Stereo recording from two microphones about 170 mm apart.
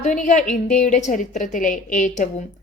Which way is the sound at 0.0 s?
45° left (ahead or behind).